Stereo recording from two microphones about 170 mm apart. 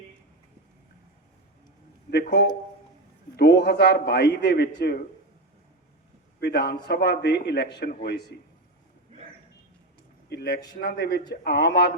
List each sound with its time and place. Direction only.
3.3 s a man's voice: 75° left (ahead or behind)
6.4 s a man's voice: 70° left (ahead or behind)
10.2 s a man's voice: 75° left (ahead or behind)